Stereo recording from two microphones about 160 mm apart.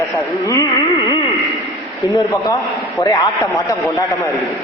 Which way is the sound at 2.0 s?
20° left (ahead or behind).